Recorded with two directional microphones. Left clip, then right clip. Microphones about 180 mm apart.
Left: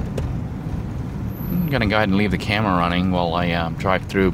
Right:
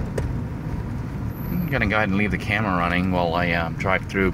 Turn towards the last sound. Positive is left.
turn(degrees=15)  # may be behind; listen again after turning